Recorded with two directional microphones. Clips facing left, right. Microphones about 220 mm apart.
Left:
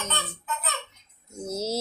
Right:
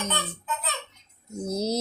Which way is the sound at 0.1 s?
15° right (ahead or behind).